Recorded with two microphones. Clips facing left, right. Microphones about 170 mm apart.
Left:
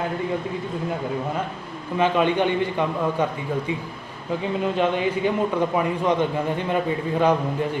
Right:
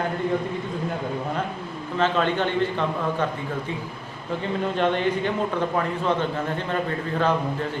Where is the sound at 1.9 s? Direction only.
10° left (ahead or behind).